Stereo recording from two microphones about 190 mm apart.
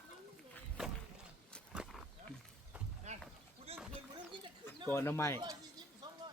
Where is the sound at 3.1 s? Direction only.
35° right (ahead or behind).